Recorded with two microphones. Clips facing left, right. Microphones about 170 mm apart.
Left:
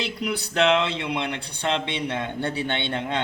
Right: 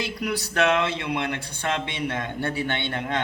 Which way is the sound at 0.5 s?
20° left (ahead or behind).